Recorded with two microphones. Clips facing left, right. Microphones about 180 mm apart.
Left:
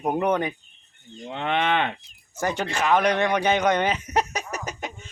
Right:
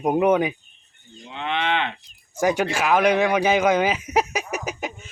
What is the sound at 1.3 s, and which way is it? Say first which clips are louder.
Moo: left 1 dB; 50° left (ahead or behind).